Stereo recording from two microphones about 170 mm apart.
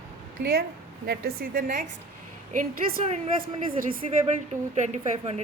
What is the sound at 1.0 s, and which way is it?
A woman's voice, 70° right (ahead or behind).